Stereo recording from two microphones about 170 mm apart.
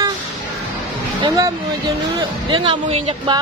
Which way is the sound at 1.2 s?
20° right (ahead or behind).